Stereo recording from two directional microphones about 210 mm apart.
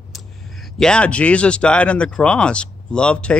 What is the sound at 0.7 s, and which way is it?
Speech, 5° left (ahead or behind).